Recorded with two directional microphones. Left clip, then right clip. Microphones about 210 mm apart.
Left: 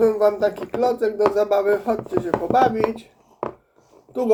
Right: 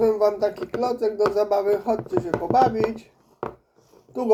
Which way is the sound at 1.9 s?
20° left (ahead or behind).